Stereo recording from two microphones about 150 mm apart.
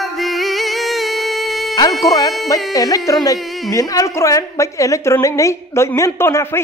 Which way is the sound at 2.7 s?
25° left (ahead or behind).